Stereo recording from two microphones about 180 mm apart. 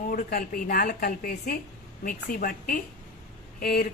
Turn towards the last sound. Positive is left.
turn(degrees=60)  # may be behind; listen again after turning